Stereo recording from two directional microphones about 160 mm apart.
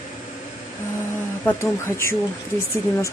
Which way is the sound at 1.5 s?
15° left (ahead or behind).